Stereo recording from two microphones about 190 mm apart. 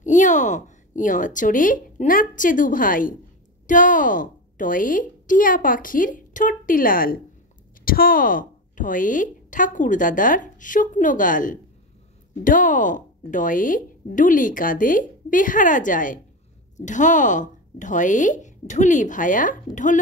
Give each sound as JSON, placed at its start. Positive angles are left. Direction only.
{"t": 0.0, "sound": "a woman's voice", "side_deg": 40}